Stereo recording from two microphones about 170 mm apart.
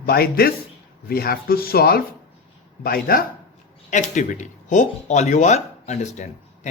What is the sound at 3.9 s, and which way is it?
Speech, 45° left (ahead or behind).